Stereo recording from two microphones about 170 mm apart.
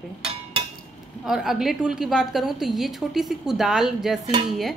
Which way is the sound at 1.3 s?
Centre (ahead or behind).